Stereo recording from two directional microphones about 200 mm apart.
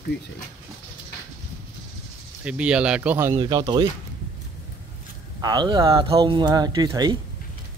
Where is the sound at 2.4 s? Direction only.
5° right (ahead or behind).